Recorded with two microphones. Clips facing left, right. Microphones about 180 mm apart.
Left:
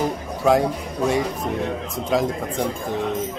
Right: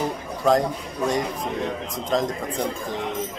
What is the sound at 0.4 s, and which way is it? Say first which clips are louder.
A man's voice: left 2 dB; 5° left (ahead or behind).